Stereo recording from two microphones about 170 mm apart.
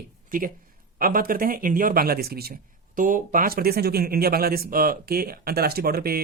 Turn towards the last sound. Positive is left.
turn(degrees=-60)  # may be behind; listen again after turning